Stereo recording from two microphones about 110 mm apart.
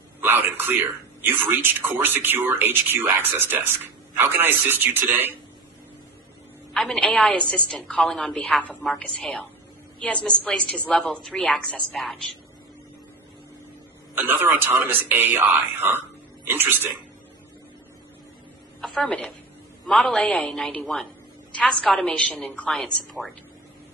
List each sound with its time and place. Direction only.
0.2 s a man's voice: 20° right (ahead or behind)
6.7 s a woman's voice: 5° left (ahead or behind)
14.1 s a man's voice: 20° right (ahead or behind)
18.8 s a woman's voice: 5° left (ahead or behind)